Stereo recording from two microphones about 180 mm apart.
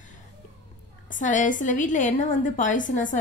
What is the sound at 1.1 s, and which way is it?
A woman's voice, 45° left (ahead or behind).